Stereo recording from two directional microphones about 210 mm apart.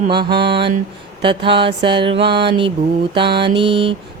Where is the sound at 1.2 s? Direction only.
25° right (ahead or behind).